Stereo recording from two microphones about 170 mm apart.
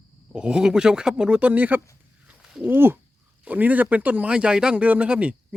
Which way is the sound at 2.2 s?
5° right (ahead or behind).